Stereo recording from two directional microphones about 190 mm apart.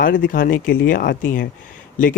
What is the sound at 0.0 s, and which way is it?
Speech, 45° left (ahead or behind).